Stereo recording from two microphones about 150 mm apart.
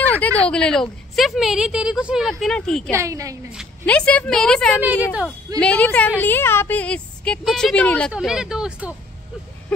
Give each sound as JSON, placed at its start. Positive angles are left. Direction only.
{"t": 0.1, "sound": "a sound", "side_deg": 10}
{"t": 0.5, "sound": "a woman's voice", "side_deg": 5}
{"t": 2.9, "sound": "a woman's voice", "side_deg": -20}
{"t": 3.8, "sound": "a woman's voice", "side_deg": 5}
{"t": 8.1, "sound": "a woman's voice", "side_deg": -5}
{"t": 9.7, "sound": "a sound", "side_deg": 5}